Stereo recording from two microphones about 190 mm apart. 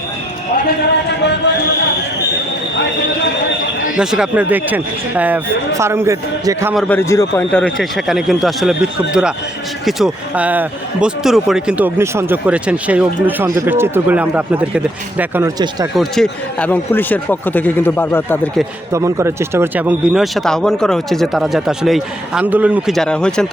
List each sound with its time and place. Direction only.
3.9 s speech: 5° right (ahead or behind)
6.7 s speech: 10° left (ahead or behind); by 15.9 s 20° right (ahead or behind)
16.0 s a man's voice: centre (ahead or behind)
18.9 s speech: 15° right (ahead or behind); by 23.5 s 5° left (ahead or behind)